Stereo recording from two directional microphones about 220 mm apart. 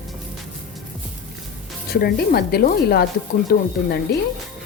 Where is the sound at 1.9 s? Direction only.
45° left (ahead or behind).